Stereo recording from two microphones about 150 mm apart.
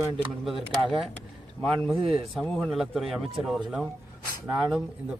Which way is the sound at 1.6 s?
5° left (ahead or behind).